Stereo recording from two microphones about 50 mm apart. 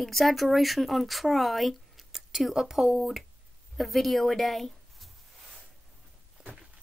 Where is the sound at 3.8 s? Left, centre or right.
Centre.